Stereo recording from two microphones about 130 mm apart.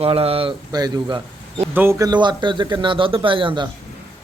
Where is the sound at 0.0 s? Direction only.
50° right (ahead or behind).